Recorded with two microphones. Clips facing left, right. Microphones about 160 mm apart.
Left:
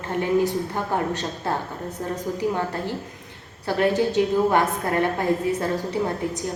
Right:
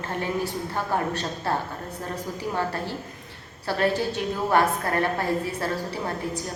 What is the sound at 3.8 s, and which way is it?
A woman's voice, 20° left (ahead or behind).